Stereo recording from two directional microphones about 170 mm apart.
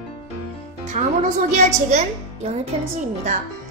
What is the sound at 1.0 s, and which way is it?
Speech, 45° right (ahead or behind).